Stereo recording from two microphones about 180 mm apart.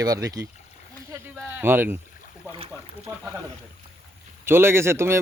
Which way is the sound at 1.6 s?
10° right (ahead or behind).